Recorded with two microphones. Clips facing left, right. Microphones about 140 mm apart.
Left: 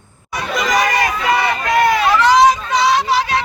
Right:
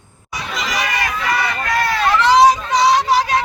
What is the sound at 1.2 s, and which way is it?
Run, 20° left (ahead or behind).